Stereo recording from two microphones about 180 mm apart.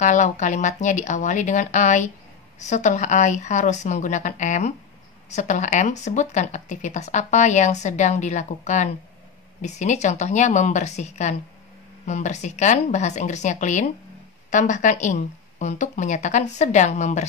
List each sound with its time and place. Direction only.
0.0 s speech: 45° left (ahead or behind)